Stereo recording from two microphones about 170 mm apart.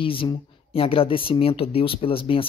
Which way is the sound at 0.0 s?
30° left (ahead or behind).